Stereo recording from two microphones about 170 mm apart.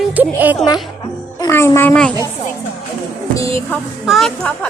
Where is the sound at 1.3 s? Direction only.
20° left (ahead or behind).